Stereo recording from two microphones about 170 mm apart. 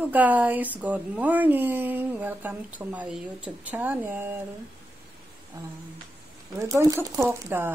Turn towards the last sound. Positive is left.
turn(degrees=-10)  # may be behind; listen again after turning